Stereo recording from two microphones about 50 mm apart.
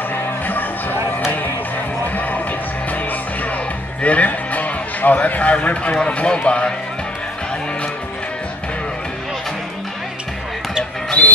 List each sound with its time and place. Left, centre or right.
0.5 s music: left
2.1 s music: left
4.0 s speech: left
11.2 s owl: left